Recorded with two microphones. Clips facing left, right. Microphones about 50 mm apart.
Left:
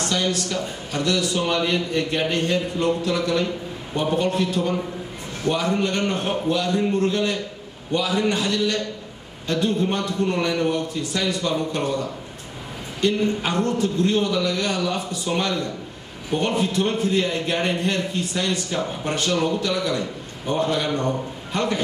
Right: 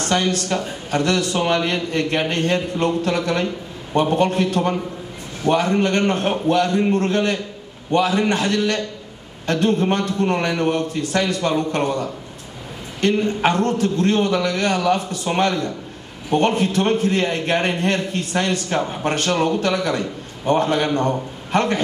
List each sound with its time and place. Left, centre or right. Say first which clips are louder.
0.0 s a man's voice: right 3 dB; right
1.9 s a man's voice: right 2 dB; right
3.9 s a man's voice: right 4 dB; right